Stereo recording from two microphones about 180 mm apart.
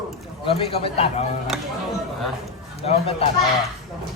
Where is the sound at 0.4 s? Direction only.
30° left (ahead or behind).